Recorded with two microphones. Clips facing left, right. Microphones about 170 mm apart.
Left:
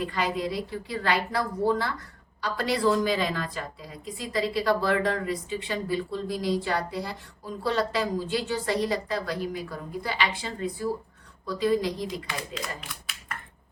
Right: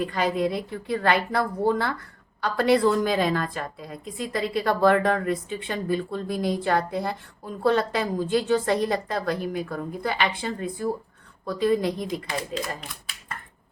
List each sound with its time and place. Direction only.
0.0 s a woman's voice: 50° right (ahead or behind)